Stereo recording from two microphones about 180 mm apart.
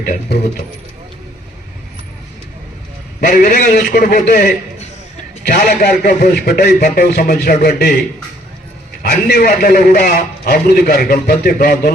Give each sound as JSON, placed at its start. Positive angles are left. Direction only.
{"t": 0.0, "sound": "a man's voice", "side_deg": 55}
{"t": 3.2, "sound": "a man's voice", "side_deg": 55}
{"t": 9.0, "sound": "a man's voice", "side_deg": 60}